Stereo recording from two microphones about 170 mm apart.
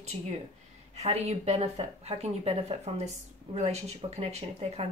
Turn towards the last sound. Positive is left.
turn(degrees=-35)  # may be behind; listen again after turning